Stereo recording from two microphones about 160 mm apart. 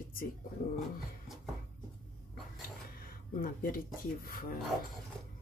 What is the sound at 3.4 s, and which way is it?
Speech, 60° left (ahead or behind).